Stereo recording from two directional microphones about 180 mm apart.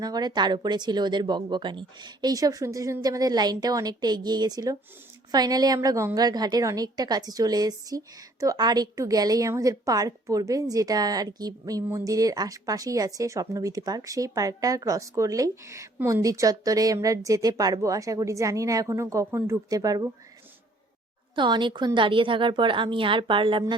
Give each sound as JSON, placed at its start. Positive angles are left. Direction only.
{"t": 0.0, "sound": "a woman's voice", "side_deg": -20}
{"t": 21.3, "sound": "a woman's voice", "side_deg": -25}